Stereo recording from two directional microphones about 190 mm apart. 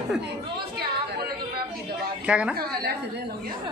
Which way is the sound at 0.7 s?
55° right (ahead or behind).